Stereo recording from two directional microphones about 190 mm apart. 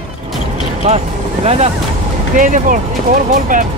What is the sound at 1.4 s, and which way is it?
Speech, 35° right (ahead or behind).